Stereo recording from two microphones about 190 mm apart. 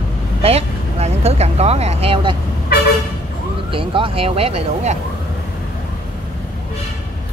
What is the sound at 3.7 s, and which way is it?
Speech, 30° right (ahead or behind).